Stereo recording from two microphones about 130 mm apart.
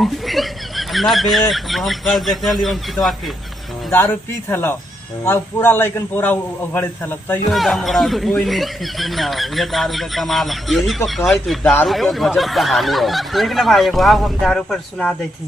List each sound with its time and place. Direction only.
0.0 s speech: centre (ahead or behind)
3.9 s a man's voice: 15° left (ahead or behind)
7.5 s speech: centre (ahead or behind)